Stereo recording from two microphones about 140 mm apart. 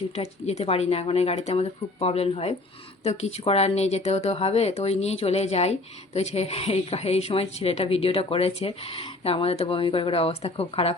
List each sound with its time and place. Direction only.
0.1 s speech: 50° left (ahead or behind)